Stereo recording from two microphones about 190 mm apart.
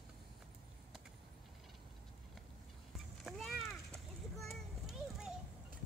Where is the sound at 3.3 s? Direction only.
Centre (ahead or behind).